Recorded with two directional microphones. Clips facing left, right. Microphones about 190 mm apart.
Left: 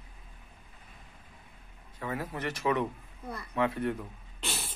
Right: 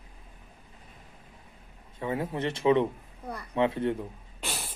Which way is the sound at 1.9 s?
25° right (ahead or behind).